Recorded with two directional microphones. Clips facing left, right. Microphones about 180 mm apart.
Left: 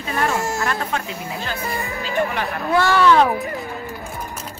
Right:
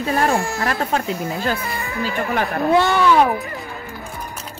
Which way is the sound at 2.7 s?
20° right (ahead or behind).